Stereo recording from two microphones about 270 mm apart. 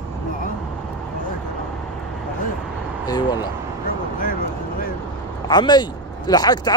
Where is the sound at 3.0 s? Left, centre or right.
Centre.